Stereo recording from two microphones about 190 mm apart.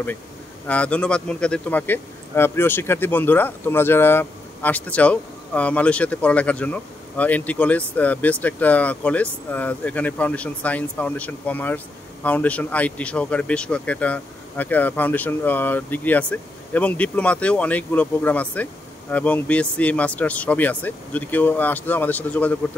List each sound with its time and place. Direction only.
0.7 s speech: 5° left (ahead or behind)